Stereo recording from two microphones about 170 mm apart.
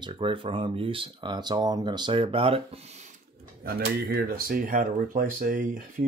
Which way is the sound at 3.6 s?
70° right (ahead or behind).